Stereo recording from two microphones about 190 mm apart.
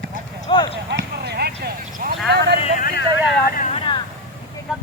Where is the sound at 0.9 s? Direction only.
60° right (ahead or behind).